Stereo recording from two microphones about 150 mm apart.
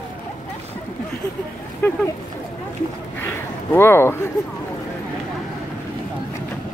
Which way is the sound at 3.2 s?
15° left (ahead or behind).